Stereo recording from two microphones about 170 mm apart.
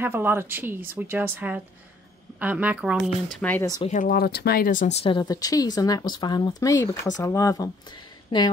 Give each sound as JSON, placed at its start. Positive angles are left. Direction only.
{"t": 0.0, "sound": "speech", "side_deg": -15}
{"t": 3.3, "sound": "speech", "side_deg": 10}
{"t": 3.8, "sound": "speech", "side_deg": 45}
{"t": 4.1, "sound": "speech", "side_deg": 70}
{"t": 5.0, "sound": "speech", "side_deg": 25}